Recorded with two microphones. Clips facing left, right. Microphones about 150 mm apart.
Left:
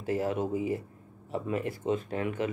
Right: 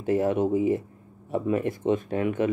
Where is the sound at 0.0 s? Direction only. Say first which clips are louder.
Right 6 dB; 25° right (ahead or behind).